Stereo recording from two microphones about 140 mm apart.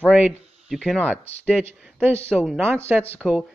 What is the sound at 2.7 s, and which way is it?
Speech, 15° right (ahead or behind).